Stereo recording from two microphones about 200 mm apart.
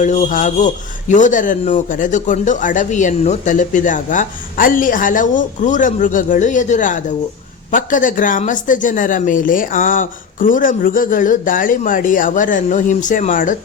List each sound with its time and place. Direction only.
0.0 s speech: 40° left (ahead or behind)